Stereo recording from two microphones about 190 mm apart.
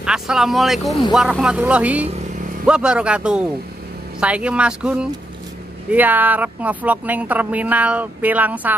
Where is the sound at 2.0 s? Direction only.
40° right (ahead or behind).